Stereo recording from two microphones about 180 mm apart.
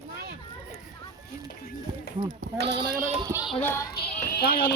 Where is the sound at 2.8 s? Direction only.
55° right (ahead or behind).